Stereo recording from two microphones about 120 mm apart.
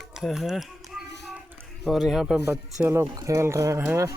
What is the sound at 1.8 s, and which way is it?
Speech, centre (ahead or behind).